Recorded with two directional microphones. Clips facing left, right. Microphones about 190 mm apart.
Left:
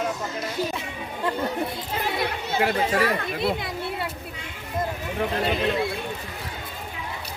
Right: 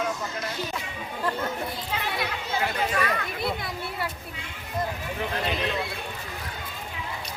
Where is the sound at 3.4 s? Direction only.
25° left (ahead or behind).